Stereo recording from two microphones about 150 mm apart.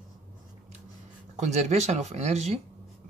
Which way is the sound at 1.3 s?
50° right (ahead or behind).